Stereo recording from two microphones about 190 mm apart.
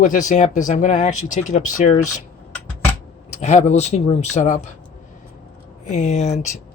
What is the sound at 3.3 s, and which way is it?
Speech, 35° left (ahead or behind).